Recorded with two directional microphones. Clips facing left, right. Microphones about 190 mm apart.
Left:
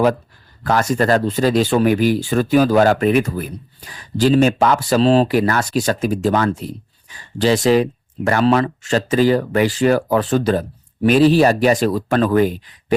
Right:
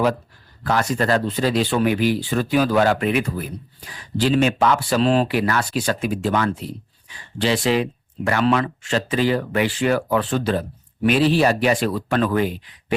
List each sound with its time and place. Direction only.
0.6 s speech: 45° left (ahead or behind)